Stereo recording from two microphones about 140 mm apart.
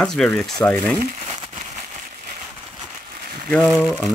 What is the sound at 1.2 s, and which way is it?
Crumpling, 45° right (ahead or behind).